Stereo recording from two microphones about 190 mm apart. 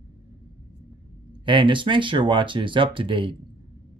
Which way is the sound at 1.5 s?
25° right (ahead or behind).